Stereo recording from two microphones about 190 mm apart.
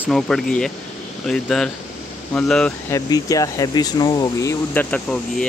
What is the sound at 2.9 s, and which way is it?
Speech, 20° left (ahead or behind).